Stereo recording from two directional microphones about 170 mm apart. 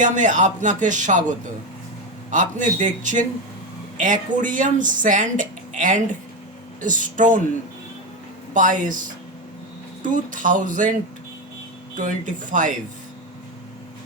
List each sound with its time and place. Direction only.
0.0 s speech: 45° right (ahead or behind)
8.5 s speech: 50° right (ahead or behind)
11.9 s speech: 50° right (ahead or behind)